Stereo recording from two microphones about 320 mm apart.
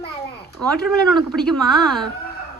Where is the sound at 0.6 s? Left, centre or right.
Centre.